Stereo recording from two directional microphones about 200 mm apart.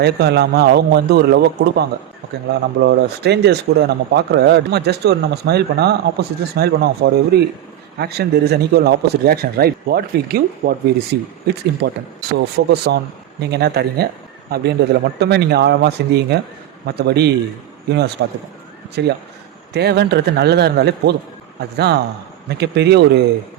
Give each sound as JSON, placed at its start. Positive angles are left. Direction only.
{"t": 0.0, "sound": "a man's voice", "side_deg": -55}